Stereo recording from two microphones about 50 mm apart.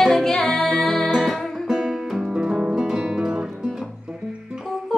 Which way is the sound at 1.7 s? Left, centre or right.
Centre.